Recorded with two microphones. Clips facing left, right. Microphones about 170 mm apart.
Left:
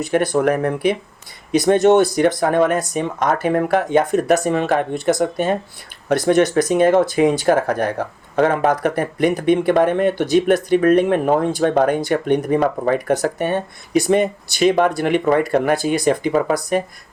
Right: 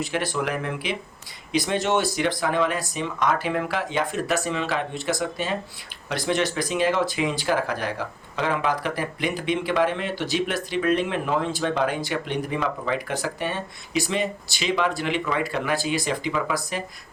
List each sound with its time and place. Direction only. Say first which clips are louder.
0.3 s speech: left 10 dB; 45° left (ahead or behind)